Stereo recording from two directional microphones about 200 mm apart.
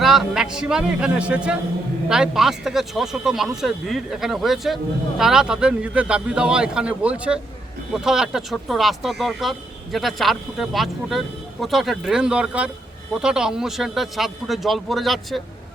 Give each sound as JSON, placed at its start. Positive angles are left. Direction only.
{"t": 0.0, "sound": "speech", "side_deg": 0}